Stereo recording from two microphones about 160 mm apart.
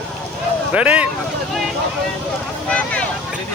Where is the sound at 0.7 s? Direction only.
10° right (ahead or behind).